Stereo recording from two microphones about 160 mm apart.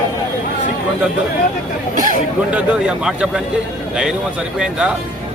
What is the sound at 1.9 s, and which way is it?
Speech, 55° right (ahead or behind).